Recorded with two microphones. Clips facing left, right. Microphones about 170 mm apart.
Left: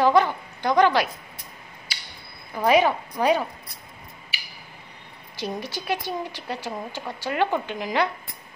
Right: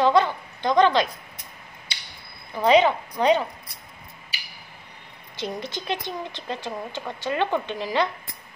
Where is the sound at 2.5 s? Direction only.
10° left (ahead or behind).